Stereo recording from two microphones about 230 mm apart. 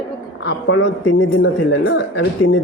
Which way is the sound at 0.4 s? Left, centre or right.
Left.